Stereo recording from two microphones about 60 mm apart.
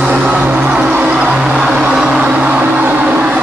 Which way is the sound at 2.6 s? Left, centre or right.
Right.